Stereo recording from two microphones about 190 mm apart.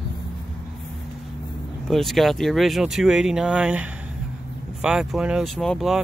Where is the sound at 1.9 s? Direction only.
Centre (ahead or behind).